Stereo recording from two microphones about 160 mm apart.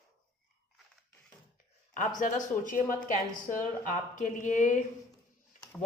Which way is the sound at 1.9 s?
55° left (ahead or behind).